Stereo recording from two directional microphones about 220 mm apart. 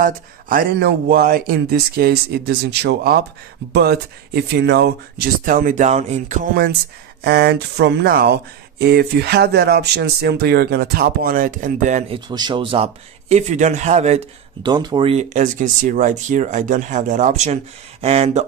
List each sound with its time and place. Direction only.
0.0 s speech: 40° right (ahead or behind)
12.3 s speech: 20° right (ahead or behind)
14.7 s speech: 20° right (ahead or behind)